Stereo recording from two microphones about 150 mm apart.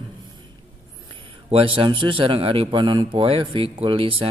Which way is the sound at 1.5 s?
35° right (ahead or behind).